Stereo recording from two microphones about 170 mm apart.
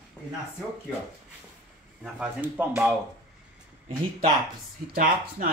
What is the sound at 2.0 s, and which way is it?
Speech, 5° right (ahead or behind).